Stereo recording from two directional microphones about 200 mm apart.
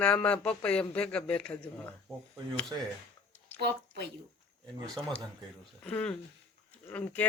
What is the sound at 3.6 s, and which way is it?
Speech, 55° right (ahead or behind).